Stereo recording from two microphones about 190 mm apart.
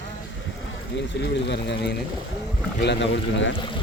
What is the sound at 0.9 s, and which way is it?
Speech, 65° left (ahead or behind).